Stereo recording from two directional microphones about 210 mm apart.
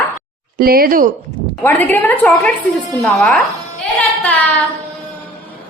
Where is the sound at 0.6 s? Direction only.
45° right (ahead or behind).